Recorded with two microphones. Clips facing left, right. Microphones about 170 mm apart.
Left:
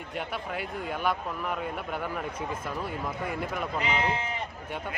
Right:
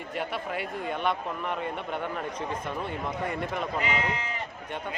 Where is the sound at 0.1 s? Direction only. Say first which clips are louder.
Right 2 dB; centre (ahead or behind).